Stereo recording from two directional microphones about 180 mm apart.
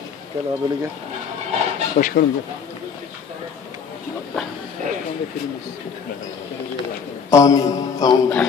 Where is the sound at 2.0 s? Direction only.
50° left (ahead or behind).